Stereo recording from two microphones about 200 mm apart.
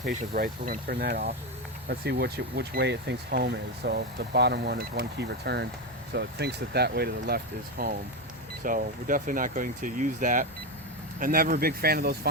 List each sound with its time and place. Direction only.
0.0 s speech: 50° right (ahead or behind)